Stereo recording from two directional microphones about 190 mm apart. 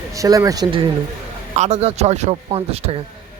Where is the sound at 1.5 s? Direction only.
35° right (ahead or behind).